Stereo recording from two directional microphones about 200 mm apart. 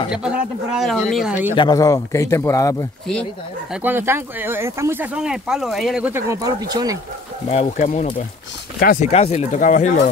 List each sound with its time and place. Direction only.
0.1 s speech: 5° right (ahead or behind)
1.5 s speech: 20° left (ahead or behind)
3.7 s speech: 10° right (ahead or behind)
7.4 s speech: 30° left (ahead or behind)
9.1 s speech: 30° left (ahead or behind)